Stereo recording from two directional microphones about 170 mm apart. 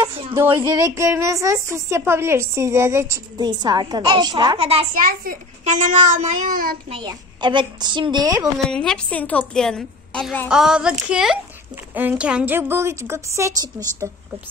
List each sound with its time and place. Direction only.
0.0 s a woman's voice: 30° right (ahead or behind)
4.9 s a child's voice: 55° right (ahead or behind)
6.9 s a woman's voice: 30° right (ahead or behind)
8.6 s a woman's voice: 5° left (ahead or behind)
10.5 s a woman's voice: 5° right (ahead or behind); by 14.2 s 20° right (ahead or behind)